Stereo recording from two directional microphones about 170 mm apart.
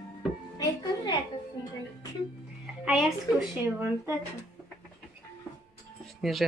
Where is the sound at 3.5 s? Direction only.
10° right (ahead or behind).